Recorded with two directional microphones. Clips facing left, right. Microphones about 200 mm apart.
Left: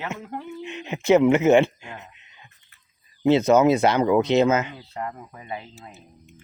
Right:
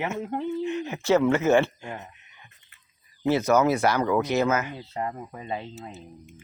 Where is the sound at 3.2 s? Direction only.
20° left (ahead or behind).